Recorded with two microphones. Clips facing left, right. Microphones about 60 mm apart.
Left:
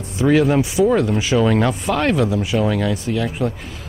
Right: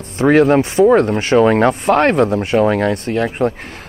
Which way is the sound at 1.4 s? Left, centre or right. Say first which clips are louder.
Right 5 dB; right.